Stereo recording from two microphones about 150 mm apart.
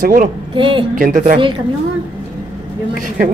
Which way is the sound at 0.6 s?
35° right (ahead or behind).